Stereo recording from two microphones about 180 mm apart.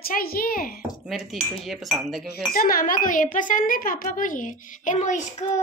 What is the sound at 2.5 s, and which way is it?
A woman's voice, 55° left (ahead or behind).